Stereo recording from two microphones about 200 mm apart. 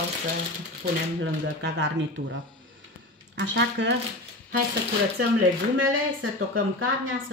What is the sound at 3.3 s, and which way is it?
Speech, 65° right (ahead or behind).